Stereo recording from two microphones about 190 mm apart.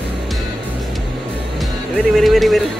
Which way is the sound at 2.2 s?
Centre (ahead or behind).